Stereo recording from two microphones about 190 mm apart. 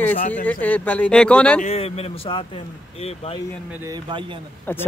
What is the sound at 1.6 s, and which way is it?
A man's voice, 30° left (ahead or behind).